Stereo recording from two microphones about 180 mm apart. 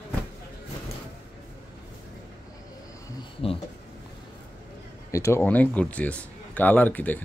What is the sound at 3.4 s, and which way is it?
Speech, 30° left (ahead or behind).